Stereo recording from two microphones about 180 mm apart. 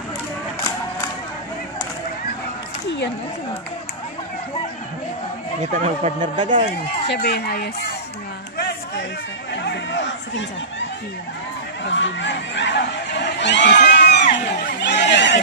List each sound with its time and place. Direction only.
5.7 s speech: 40° right (ahead or behind)
7.1 s speech: 65° left (ahead or behind)
8.5 s a sound: 65° left (ahead or behind)
9.5 s chatter: 75° left (ahead or behind)
11.8 s speech: 90° left
13.8 s a sound: 70° left (ahead or behind)
14.3 s speech: 75° left (ahead or behind)